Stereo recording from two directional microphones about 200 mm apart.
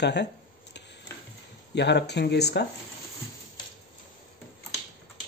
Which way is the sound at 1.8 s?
60° left (ahead or behind).